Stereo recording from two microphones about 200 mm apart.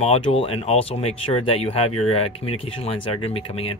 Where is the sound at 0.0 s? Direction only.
30° left (ahead or behind).